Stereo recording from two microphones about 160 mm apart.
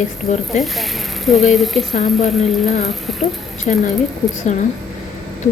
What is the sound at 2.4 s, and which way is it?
Speech, 45° left (ahead or behind).